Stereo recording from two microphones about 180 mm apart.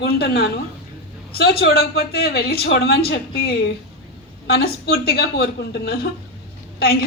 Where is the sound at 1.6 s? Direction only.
65° left (ahead or behind).